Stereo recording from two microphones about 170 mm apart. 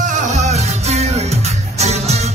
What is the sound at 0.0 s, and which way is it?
Music, 45° right (ahead or behind).